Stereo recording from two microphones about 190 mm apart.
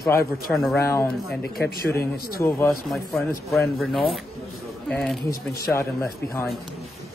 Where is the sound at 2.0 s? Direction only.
55° left (ahead or behind).